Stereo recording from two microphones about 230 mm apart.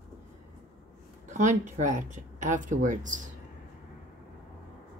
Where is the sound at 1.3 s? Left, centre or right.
Right.